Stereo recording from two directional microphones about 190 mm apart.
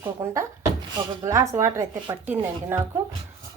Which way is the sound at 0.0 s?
15° right (ahead or behind).